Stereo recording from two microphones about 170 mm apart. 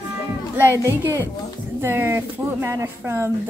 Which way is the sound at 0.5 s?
15° right (ahead or behind).